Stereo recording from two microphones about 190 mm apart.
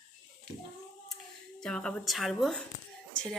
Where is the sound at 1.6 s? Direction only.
5° left (ahead or behind).